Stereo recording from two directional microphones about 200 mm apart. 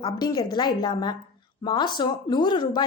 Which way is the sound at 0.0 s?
20° left (ahead or behind).